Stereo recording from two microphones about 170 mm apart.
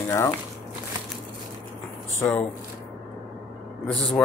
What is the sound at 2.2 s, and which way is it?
Speech, 15° left (ahead or behind).